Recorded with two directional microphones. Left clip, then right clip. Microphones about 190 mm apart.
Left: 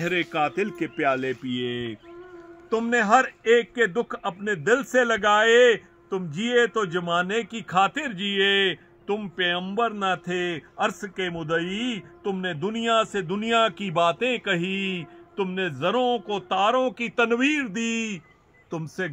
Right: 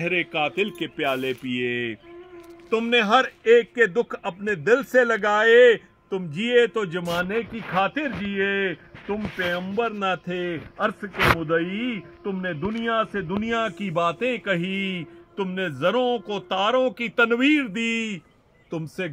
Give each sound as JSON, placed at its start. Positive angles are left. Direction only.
{"t": 0.4, "sound": "a man's voice", "side_deg": -10}
{"t": 7.2, "sound": "speech", "side_deg": 20}
{"t": 8.3, "sound": "a man's voice", "side_deg": 35}
{"t": 9.6, "sound": "a man's voice", "side_deg": 0}
{"t": 10.5, "sound": "a man's voice", "side_deg": 30}
{"t": 13.4, "sound": "a man's voice", "side_deg": 10}